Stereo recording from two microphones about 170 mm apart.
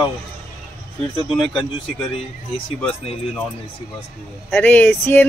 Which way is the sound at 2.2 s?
35° left (ahead or behind).